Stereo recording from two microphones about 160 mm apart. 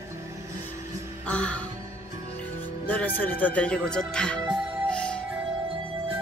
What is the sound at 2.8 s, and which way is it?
A man's voice, 10° left (ahead or behind).